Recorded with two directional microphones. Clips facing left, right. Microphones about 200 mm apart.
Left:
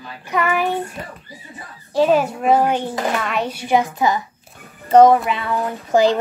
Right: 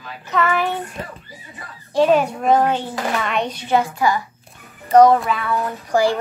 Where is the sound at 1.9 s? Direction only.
5° left (ahead or behind); by 4.2 s 20° left (ahead or behind).